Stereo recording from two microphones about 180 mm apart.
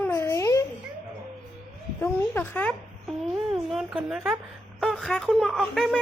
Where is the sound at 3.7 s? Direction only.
5° right (ahead or behind).